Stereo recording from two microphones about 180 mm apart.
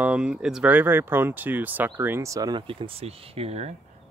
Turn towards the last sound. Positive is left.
turn(degrees=-35)  # may be behind; listen again after turning